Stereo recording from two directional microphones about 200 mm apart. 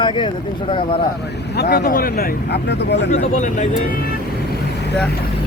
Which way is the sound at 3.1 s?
40° left (ahead or behind).